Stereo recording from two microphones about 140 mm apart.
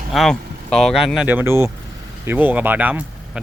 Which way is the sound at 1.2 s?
15° right (ahead or behind).